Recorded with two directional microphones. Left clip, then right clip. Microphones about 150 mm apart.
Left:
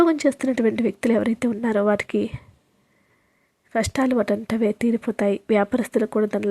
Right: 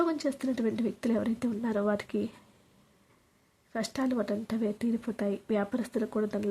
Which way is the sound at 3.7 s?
40° left (ahead or behind).